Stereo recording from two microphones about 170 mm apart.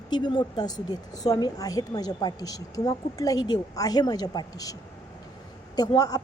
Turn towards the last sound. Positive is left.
turn(degrees=20)  # may be behind; listen again after turning